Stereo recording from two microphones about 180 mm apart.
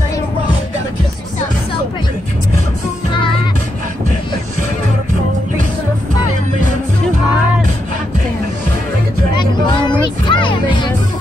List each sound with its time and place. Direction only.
9.3 s music: 25° left (ahead or behind)